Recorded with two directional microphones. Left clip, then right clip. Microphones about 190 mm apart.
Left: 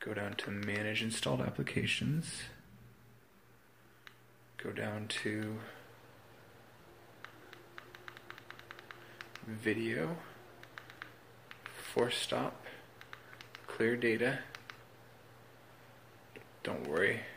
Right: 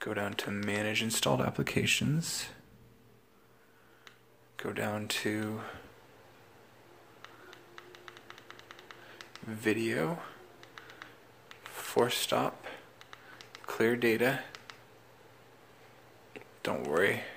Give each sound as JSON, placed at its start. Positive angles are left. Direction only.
{"t": 0.0, "sound": "speech", "side_deg": -25}
{"t": 4.6, "sound": "speech", "side_deg": -30}
{"t": 7.2, "sound": "a sound", "side_deg": -25}
{"t": 16.3, "sound": "speech", "side_deg": -30}